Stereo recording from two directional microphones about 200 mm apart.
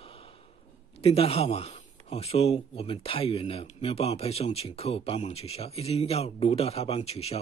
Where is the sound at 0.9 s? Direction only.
30° left (ahead or behind).